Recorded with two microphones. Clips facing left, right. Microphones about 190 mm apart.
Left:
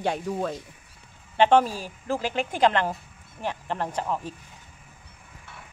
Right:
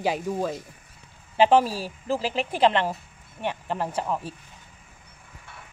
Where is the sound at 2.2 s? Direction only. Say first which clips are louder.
Right 1 dB; 35° right (ahead or behind).